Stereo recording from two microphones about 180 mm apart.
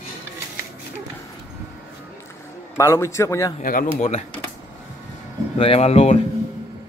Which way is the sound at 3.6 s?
50° left (ahead or behind).